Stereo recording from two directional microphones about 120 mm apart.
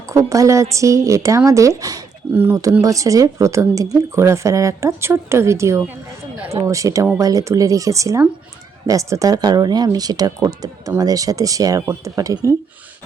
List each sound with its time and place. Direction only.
0.1 s speech: 25° right (ahead or behind)
2.3 s speech: 15° right (ahead or behind)
2.8 s speech: 25° right (ahead or behind)